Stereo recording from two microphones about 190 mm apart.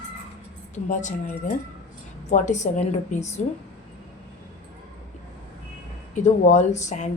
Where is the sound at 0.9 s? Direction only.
40° left (ahead or behind).